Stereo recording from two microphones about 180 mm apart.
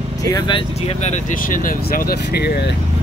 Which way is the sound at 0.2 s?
20° left (ahead or behind).